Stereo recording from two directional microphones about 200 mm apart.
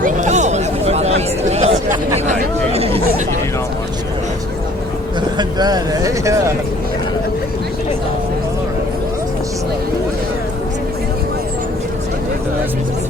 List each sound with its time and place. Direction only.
0.0 s chatter: 35° right (ahead or behind)
2.7 s chatter: 30° right (ahead or behind)
5.4 s speech: 20° right (ahead or behind)